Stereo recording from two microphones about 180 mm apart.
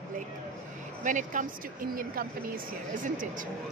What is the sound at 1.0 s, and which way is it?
Speech, 45° right (ahead or behind).